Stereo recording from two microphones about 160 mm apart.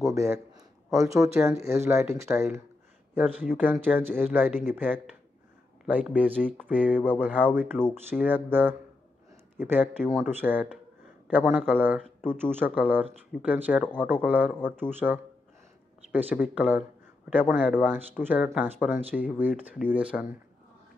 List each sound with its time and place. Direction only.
0.1 s a man's voice: 20° right (ahead or behind)